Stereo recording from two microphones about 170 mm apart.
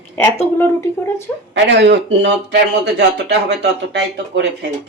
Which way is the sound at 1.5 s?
90° right.